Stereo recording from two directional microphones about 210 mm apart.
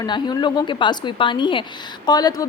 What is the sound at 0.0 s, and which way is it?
A woman's voice, 20° left (ahead or behind).